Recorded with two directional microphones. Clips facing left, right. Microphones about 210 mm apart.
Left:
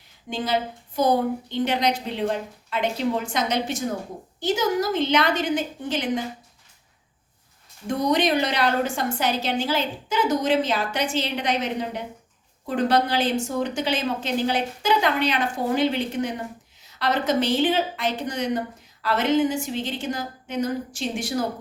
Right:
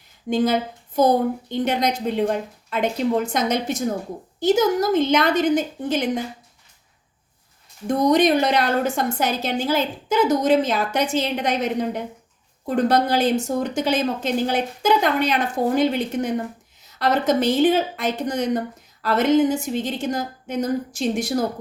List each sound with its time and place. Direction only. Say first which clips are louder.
0.3 s a woman's voice: right 6 dB; 45° right (ahead or behind)
7.9 s a woman's voice: right 5 dB; 45° right (ahead or behind)